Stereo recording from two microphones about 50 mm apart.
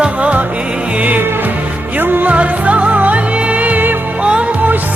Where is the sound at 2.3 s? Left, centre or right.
Right.